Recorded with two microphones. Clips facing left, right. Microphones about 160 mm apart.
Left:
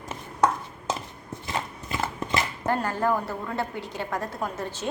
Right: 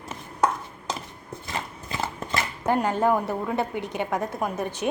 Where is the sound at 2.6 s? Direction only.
15° right (ahead or behind).